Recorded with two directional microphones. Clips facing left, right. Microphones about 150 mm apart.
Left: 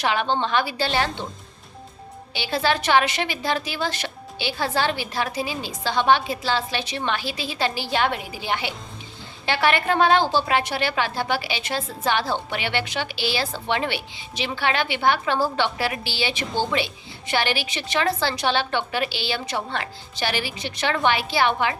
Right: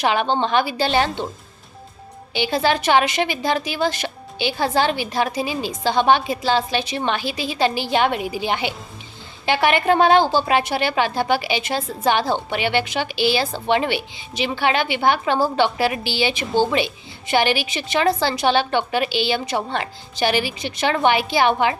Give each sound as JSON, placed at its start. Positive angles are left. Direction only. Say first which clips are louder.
{"t": 0.0, "sound": "a woman's voice", "louder": "right 3 dB", "side_deg": -15}
{"t": 2.3, "sound": "a woman's voice", "louder": "right 4 dB", "side_deg": -15}